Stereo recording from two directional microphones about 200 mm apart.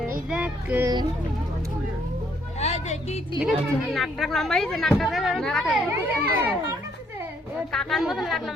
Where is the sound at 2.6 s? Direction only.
35° left (ahead or behind).